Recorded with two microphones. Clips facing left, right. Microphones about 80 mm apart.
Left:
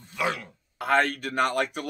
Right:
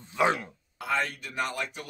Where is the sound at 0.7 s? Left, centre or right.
Left.